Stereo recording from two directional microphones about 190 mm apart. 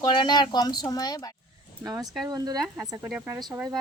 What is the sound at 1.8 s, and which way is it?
Speech, 20° right (ahead or behind).